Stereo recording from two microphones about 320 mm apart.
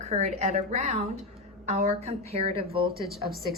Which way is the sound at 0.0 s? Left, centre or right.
Centre.